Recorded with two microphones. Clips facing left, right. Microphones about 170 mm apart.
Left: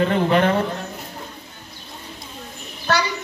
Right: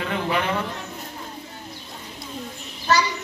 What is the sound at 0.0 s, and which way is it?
Speech, 45° left (ahead or behind).